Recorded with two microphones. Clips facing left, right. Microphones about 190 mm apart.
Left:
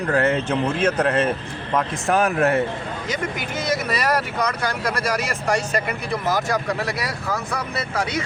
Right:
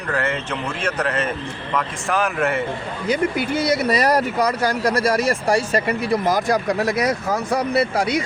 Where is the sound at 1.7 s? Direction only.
40° left (ahead or behind).